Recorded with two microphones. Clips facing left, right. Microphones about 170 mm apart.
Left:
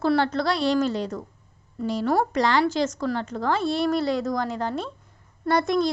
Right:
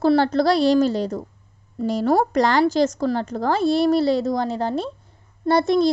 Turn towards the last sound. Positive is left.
turn(degrees=-30)  # may be behind; listen again after turning